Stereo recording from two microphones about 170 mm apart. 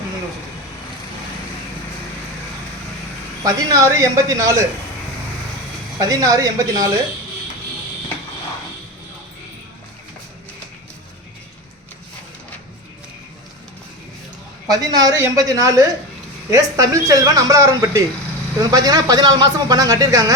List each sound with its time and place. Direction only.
3.4 s speech: 20° right (ahead or behind)
6.0 s speech: 20° right (ahead or behind)
14.7 s speech: 20° right (ahead or behind)